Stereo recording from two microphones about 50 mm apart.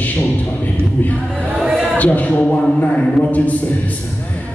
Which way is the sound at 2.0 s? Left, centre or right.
Left.